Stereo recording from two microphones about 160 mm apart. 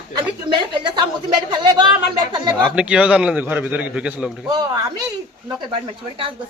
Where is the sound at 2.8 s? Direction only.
5° right (ahead or behind).